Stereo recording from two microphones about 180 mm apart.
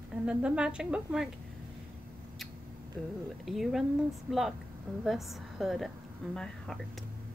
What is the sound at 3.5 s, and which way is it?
A woman's voice, centre (ahead or behind).